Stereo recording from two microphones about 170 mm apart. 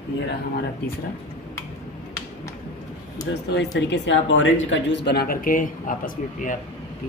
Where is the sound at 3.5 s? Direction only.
90° left; by 6.0 s 50° left (ahead or behind).